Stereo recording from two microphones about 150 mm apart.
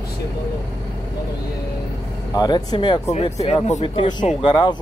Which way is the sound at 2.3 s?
25° left (ahead or behind).